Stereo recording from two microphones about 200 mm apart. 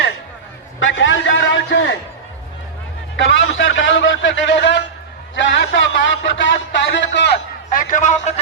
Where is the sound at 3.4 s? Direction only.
70° left (ahead or behind).